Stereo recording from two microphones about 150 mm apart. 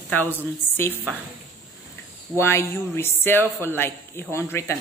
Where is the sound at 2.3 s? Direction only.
15° left (ahead or behind).